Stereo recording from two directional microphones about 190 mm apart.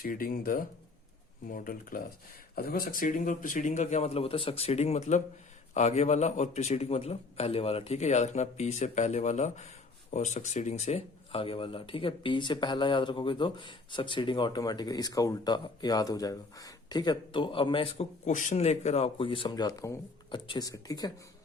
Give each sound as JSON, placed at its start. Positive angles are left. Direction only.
{"t": 0.0, "sound": "speech", "side_deg": 50}
{"t": 18.3, "sound": "speech", "side_deg": 40}